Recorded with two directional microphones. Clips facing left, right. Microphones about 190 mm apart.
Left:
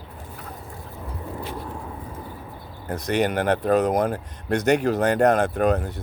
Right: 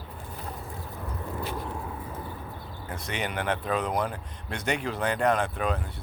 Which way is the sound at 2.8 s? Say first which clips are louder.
Left 11 dB; 40° left (ahead or behind).